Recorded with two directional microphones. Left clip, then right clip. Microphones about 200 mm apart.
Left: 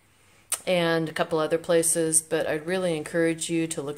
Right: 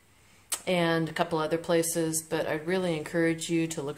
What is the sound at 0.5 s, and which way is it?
Speech, 20° left (ahead or behind).